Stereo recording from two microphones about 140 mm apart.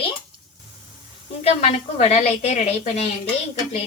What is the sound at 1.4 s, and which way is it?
A woman's voice, 50° left (ahead or behind).